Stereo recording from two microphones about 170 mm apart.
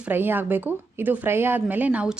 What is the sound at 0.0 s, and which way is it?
A woman's voice, 10° right (ahead or behind).